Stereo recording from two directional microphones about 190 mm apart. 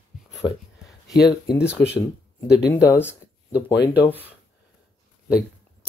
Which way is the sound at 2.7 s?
15° left (ahead or behind).